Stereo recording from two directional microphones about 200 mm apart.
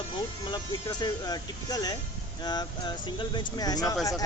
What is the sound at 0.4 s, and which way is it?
Speech, 20° left (ahead or behind).